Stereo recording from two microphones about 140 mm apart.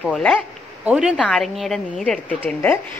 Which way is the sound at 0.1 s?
5° left (ahead or behind).